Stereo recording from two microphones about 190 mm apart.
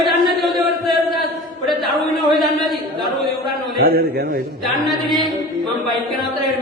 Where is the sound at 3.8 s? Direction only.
55° right (ahead or behind).